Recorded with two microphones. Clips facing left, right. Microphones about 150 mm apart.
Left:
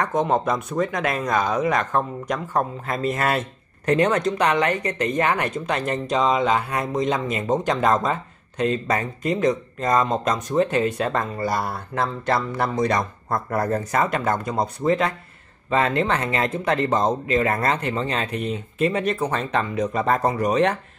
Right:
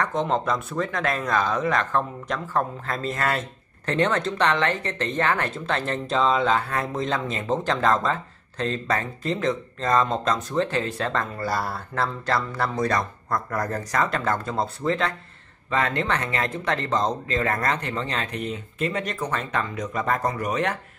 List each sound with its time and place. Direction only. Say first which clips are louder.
0.0 s speech: left 3 dB; 20° left (ahead or behind)